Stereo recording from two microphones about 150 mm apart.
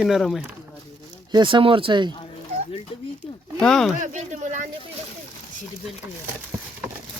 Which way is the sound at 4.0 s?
55° right (ahead or behind).